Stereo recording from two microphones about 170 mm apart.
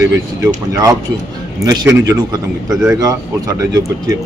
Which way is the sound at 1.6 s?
20° right (ahead or behind).